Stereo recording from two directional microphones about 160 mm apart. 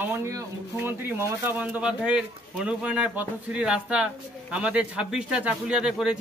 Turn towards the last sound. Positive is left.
turn(degrees=-5)  # may be behind; listen again after turning